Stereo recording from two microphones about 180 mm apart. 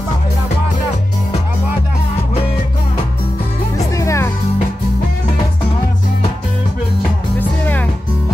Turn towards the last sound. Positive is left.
turn(degrees=10)  # may be behind; listen again after turning